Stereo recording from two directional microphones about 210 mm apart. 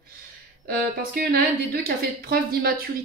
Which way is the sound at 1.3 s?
45° right (ahead or behind).